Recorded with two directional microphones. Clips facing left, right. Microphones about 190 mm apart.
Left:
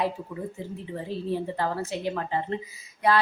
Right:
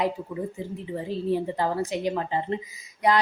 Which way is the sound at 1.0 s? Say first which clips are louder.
Right 3 dB; 15° right (ahead or behind).